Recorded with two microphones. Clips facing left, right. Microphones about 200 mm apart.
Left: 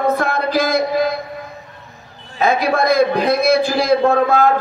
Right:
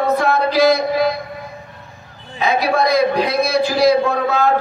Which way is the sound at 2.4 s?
50° left (ahead or behind).